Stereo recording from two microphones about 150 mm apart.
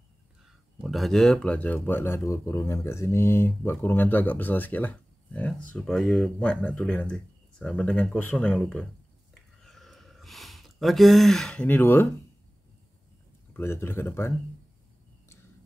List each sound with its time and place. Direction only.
0.7 s speech: centre (ahead or behind)
9.3 s a sound: centre (ahead or behind)
13.5 s speech: 15° left (ahead or behind)